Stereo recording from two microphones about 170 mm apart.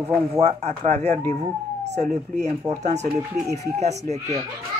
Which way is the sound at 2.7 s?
40° right (ahead or behind).